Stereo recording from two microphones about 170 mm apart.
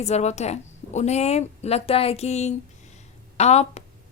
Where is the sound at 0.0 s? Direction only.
40° left (ahead or behind).